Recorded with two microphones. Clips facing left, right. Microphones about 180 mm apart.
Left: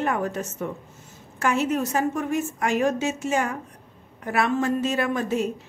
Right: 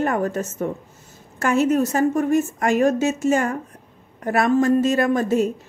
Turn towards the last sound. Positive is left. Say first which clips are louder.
# right 6 dB
turn(degrees=-45)  # may be behind; listen again after turning